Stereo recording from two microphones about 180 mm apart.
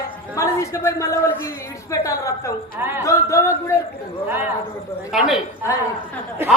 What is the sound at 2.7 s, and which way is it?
Speech, 10° right (ahead or behind).